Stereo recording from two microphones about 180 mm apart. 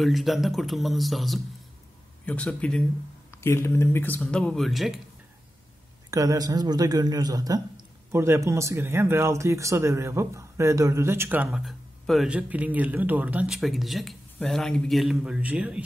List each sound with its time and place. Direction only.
0.0 s speech: centre (ahead or behind)
6.0 s speech: 20° right (ahead or behind)